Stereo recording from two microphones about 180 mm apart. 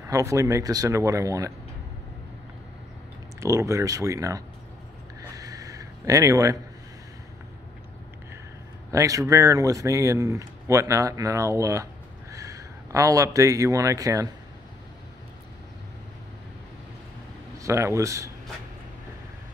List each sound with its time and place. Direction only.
0.0 s speech: 15° right (ahead or behind)
3.3 s speech: 15° right (ahead or behind)
5.3 s a sound: 20° right (ahead or behind)
8.9 s speech: 15° right (ahead or behind)
17.6 s speech: 15° right (ahead or behind)